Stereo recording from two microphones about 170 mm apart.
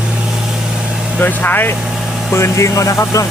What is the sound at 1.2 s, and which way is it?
Speech, 10° left (ahead or behind).